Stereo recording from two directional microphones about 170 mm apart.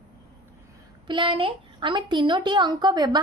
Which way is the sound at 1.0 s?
30° right (ahead or behind).